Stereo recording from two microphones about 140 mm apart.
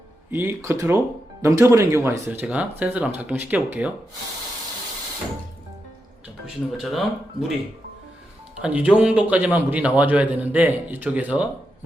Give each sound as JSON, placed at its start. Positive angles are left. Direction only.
{"t": 0.3, "sound": "a man's voice", "side_deg": -20}
{"t": 6.4, "sound": "speech", "side_deg": 0}
{"t": 8.6, "sound": "a man's voice", "side_deg": -10}